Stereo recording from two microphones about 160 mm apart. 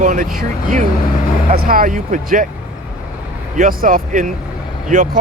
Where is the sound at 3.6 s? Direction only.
60° right (ahead or behind).